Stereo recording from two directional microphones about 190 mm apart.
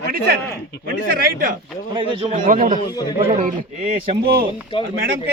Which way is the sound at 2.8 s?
20° left (ahead or behind).